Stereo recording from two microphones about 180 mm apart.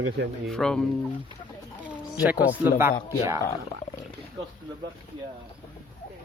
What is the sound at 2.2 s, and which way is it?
Speech, 10° right (ahead or behind).